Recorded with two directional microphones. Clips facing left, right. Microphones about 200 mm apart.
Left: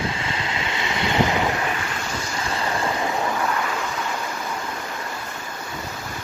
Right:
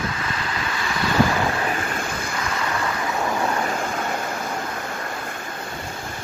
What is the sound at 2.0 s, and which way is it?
Vehicle, 55° right (ahead or behind).